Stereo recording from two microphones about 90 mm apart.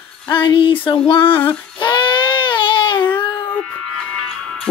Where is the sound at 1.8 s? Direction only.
60° left (ahead or behind).